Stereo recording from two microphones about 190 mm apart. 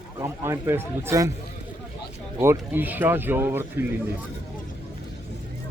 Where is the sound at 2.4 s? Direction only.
10° right (ahead or behind).